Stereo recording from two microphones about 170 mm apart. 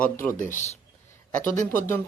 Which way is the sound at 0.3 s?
50° left (ahead or behind).